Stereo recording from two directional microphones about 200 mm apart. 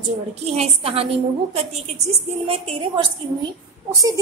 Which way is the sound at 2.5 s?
30° right (ahead or behind).